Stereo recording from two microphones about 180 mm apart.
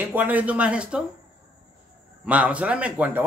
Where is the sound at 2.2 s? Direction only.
5° right (ahead or behind).